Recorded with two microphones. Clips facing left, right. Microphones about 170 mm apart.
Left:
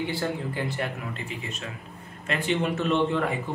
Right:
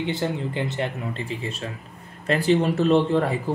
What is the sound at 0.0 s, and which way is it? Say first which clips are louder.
A man's voice: right 3 dB; 20° right (ahead or behind).